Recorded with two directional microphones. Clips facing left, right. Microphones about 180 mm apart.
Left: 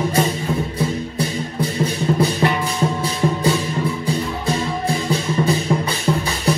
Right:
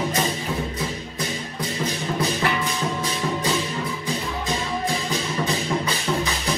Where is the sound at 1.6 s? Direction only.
35° left (ahead or behind).